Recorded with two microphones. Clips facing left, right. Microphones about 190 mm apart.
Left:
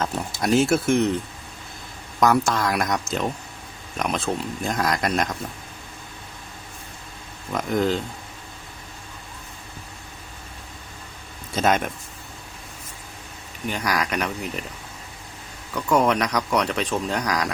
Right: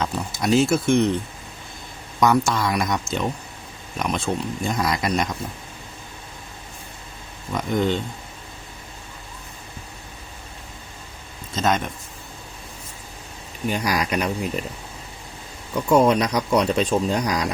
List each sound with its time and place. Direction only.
0.4 s speech: centre (ahead or behind)
2.2 s speech: centre (ahead or behind)
7.5 s speech: centre (ahead or behind)
11.5 s speech: 10° left (ahead or behind)
13.8 s speech: 25° right (ahead or behind)
15.7 s speech: 25° right (ahead or behind)